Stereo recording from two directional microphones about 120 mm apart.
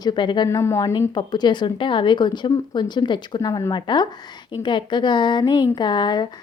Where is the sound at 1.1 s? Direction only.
40° left (ahead or behind).